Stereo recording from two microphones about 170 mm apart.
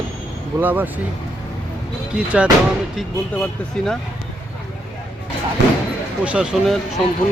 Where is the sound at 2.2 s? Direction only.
5° right (ahead or behind).